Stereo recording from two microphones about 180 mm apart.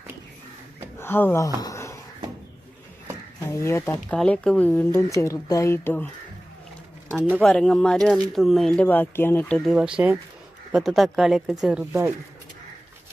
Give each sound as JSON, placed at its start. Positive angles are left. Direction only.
{"t": 0.9, "sound": "speech", "side_deg": 10}
{"t": 1.6, "sound": "a sound", "side_deg": 15}
{"t": 3.5, "sound": "speech", "side_deg": 15}
{"t": 7.1, "sound": "speech", "side_deg": -10}
{"t": 7.4, "sound": "speech", "side_deg": 5}
{"t": 9.6, "sound": "speech", "side_deg": -5}